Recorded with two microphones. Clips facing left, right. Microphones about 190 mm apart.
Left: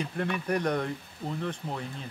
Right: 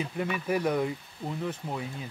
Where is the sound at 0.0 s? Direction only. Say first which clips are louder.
Even; 5° right (ahead or behind).